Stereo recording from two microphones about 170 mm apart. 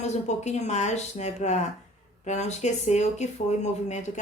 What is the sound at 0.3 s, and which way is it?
Speech, 40° left (ahead or behind).